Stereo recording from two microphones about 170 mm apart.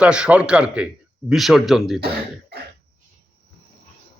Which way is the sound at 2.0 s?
70° right (ahead or behind).